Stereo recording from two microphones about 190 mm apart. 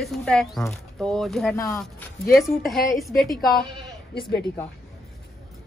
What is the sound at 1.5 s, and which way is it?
Speech, 15° left (ahead or behind).